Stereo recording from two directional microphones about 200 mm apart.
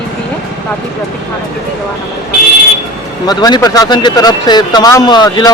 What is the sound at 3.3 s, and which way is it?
Speech, 20° left (ahead or behind).